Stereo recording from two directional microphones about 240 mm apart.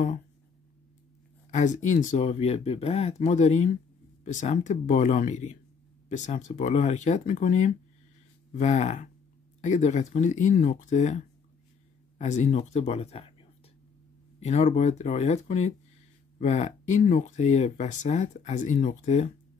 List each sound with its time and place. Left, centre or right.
1.5 s speech: left